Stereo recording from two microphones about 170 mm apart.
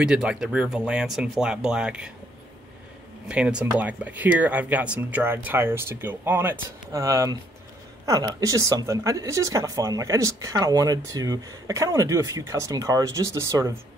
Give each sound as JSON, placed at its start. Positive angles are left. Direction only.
{"t": 0.0, "sound": "speech", "side_deg": -5}
{"t": 3.3, "sound": "speech", "side_deg": -5}